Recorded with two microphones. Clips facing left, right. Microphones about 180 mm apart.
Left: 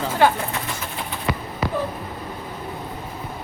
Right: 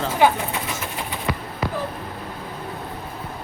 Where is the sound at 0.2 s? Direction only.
15° right (ahead or behind).